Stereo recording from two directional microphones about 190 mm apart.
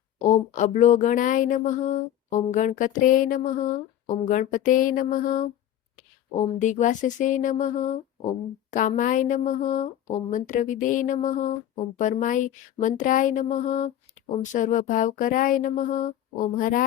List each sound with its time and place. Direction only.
0.2 s a woman's voice: 40° left (ahead or behind)
2.5 s a sound: 40° left (ahead or behind)
6.0 s a woman's voice: 40° left (ahead or behind)